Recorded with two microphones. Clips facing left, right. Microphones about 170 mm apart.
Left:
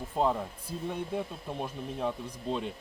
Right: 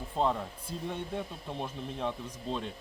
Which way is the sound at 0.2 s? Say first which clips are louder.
Left 1 dB; 10° left (ahead or behind).